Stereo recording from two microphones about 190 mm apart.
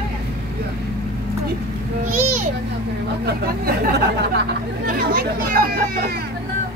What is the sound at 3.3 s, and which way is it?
Speech, 50° right (ahead or behind).